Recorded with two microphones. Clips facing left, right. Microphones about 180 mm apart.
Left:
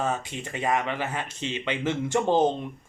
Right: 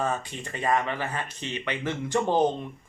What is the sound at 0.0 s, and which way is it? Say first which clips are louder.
Speech: left 1 dB; 10° left (ahead or behind).